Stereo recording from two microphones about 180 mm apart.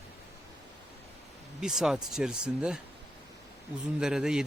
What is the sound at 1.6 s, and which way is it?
Speech, centre (ahead or behind).